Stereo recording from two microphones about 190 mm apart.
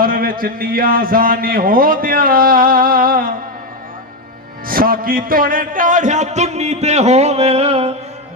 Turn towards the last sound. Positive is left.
turn(degrees=-30)  # may be behind; listen again after turning